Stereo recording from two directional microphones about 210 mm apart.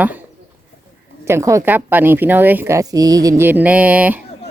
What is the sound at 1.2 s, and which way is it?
Speech, 15° right (ahead or behind).